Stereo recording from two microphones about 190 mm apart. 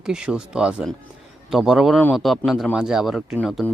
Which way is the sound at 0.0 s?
5° right (ahead or behind).